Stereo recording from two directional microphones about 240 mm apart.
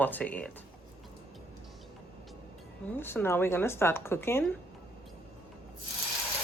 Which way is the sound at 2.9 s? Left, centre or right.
Centre.